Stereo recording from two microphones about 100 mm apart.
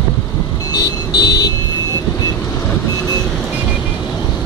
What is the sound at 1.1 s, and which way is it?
Vehicle, 40° left (ahead or behind).